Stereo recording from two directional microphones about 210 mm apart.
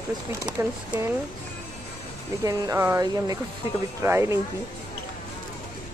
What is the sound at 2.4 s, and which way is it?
Speech, 15° right (ahead or behind).